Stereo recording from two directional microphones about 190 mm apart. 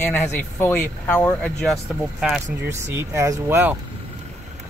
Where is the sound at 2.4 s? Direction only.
15° right (ahead or behind).